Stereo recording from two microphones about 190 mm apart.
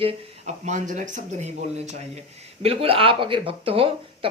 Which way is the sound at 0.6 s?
40° right (ahead or behind).